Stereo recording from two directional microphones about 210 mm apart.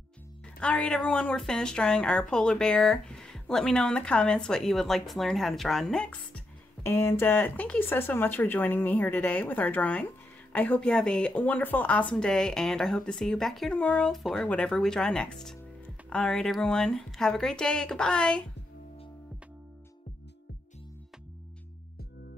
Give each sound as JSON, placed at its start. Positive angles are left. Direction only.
{"t": 0.6, "sound": "speech", "side_deg": 5}